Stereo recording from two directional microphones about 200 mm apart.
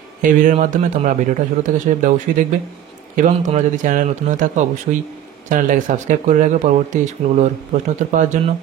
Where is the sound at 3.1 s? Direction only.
35° right (ahead or behind).